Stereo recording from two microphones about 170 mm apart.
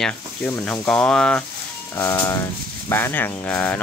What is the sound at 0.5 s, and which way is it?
Speech, 5° left (ahead or behind).